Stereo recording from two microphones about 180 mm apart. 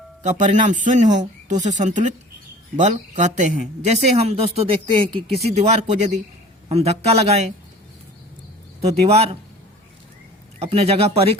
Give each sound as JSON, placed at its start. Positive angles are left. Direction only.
{"t": 0.2, "sound": "speech", "side_deg": -45}
{"t": 8.8, "sound": "speech", "side_deg": -35}
{"t": 10.6, "sound": "speech", "side_deg": -35}